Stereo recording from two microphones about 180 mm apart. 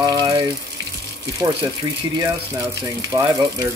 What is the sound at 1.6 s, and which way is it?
Speech, 20° right (ahead or behind).